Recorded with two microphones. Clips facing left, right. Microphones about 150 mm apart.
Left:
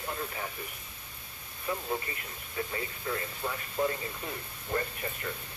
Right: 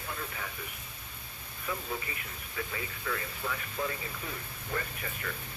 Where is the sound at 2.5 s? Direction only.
30° left (ahead or behind).